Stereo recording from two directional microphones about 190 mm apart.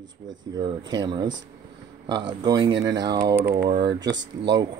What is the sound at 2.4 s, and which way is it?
Speech, 20° right (ahead or behind).